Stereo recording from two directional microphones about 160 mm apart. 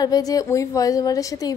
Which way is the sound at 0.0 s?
25° left (ahead or behind).